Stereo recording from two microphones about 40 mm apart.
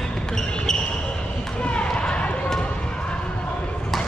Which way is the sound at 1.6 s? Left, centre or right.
Left.